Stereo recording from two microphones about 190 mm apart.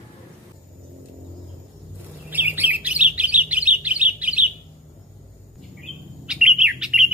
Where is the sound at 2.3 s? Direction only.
10° right (ahead or behind).